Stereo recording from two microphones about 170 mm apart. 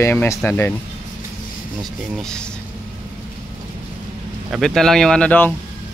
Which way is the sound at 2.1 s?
5° left (ahead or behind).